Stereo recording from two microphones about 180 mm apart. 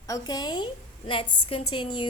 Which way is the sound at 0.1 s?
20° left (ahead or behind).